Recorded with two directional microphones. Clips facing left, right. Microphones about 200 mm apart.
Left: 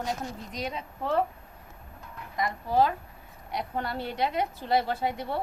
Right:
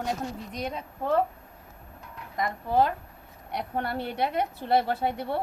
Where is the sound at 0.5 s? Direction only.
50° right (ahead or behind).